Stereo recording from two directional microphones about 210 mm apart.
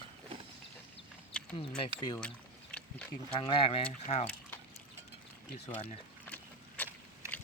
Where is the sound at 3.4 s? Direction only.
25° left (ahead or behind).